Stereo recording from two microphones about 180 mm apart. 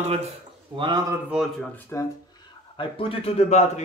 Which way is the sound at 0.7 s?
25° right (ahead or behind).